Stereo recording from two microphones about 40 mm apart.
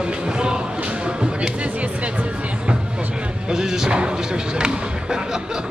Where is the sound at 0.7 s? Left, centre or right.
Right.